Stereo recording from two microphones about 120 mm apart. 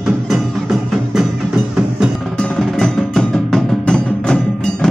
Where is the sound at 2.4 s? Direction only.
5° left (ahead or behind).